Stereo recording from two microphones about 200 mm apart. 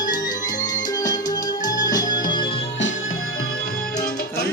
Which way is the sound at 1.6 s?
20° left (ahead or behind).